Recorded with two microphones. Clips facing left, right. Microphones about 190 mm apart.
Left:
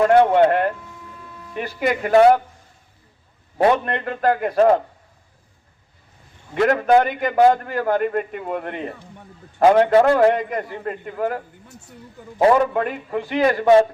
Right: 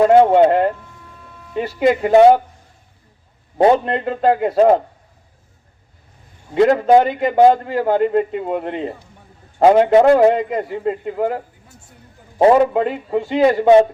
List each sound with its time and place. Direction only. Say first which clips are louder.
0.0 s a man's voice: right 3 dB; 25° right (ahead or behind)
3.6 s a man's voice: right 4 dB; 25° right (ahead or behind)
6.5 s a man's voice: right 4 dB; 25° right (ahead or behind)